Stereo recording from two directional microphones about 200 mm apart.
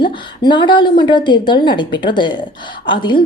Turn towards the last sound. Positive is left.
turn(degrees=25)  # may be behind; listen again after turning